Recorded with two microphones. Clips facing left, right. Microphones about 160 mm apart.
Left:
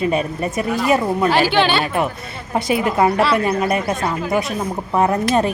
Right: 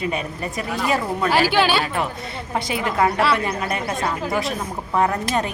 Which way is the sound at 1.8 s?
20° left (ahead or behind).